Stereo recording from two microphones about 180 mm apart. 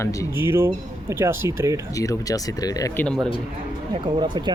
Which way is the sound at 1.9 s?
20° left (ahead or behind).